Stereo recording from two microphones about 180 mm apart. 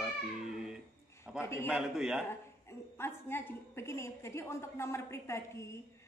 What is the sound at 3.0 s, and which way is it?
A woman's voice, 15° left (ahead or behind).